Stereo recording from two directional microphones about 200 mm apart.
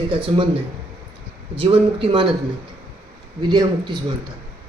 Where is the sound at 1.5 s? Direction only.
25° right (ahead or behind).